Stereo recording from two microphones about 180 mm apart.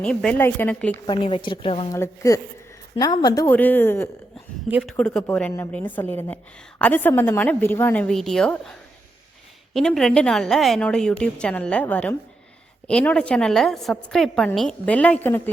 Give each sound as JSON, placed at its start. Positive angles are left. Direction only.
{"t": 0.0, "sound": "a woman's voice", "side_deg": 5}
{"t": 1.0, "sound": "speech", "side_deg": 30}
{"t": 1.9, "sound": "a woman's voice", "side_deg": 15}
{"t": 4.7, "sound": "a woman's voice", "side_deg": -5}
{"t": 9.7, "sound": "a woman's voice", "side_deg": 0}